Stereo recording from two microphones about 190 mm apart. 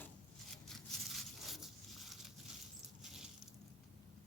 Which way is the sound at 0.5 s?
Centre (ahead or behind).